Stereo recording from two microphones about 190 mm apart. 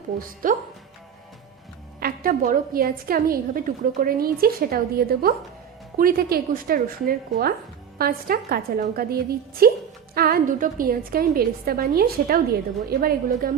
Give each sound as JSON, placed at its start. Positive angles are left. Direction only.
{"t": 0.4, "sound": "a woman's voice", "side_deg": -45}
{"t": 2.0, "sound": "a woman's voice", "side_deg": -50}